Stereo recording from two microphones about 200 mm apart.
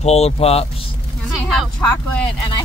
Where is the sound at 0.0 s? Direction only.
30° left (ahead or behind).